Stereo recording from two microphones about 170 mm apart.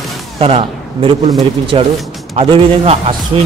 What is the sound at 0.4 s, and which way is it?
A man's voice, 35° right (ahead or behind).